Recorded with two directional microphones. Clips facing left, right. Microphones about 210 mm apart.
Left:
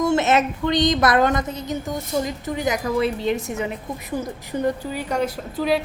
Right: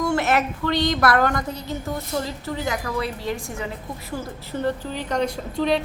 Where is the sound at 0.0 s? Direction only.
20° left (ahead or behind).